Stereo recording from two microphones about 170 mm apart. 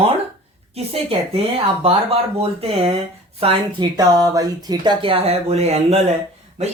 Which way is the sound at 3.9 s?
20° right (ahead or behind).